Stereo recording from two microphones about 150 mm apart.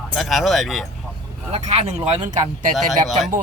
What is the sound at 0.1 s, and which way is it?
Speech, centre (ahead or behind).